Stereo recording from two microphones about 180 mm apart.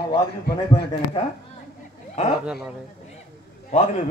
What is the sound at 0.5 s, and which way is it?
Speech, 65° left (ahead or behind).